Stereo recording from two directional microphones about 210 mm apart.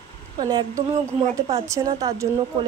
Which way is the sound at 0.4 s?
20° right (ahead or behind).